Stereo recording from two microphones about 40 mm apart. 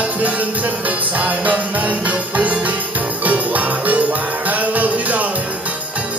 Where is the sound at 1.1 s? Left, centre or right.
Right.